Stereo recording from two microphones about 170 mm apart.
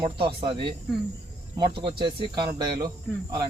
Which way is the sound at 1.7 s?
30° right (ahead or behind).